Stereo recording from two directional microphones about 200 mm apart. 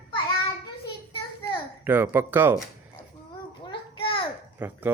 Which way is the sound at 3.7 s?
25° left (ahead or behind).